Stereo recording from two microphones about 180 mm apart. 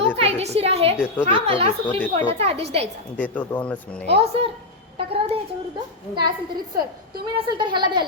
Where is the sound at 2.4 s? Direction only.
35° right (ahead or behind).